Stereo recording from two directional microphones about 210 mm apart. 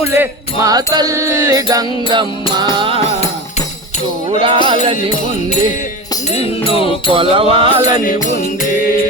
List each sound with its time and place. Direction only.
0.2 s music: 15° right (ahead or behind)
4.3 s music: 25° right (ahead or behind)
6.3 s music: 25° left (ahead or behind)
7.1 s music: 25° right (ahead or behind)